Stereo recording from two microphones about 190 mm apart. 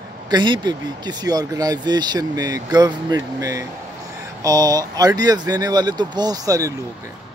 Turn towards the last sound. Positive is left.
turn(degrees=-20)  # may be behind; listen again after turning